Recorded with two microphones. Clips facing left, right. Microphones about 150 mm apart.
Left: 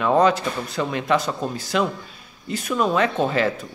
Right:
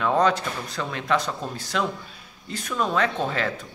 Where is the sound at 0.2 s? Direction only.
5° left (ahead or behind).